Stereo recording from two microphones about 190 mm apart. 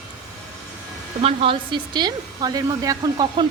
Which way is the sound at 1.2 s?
30° right (ahead or behind).